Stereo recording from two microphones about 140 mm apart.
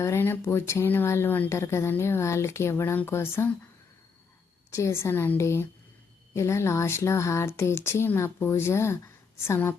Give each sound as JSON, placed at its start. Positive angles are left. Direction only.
{"t": 0.0, "sound": "speech", "side_deg": 15}
{"t": 4.7, "sound": "speech", "side_deg": 20}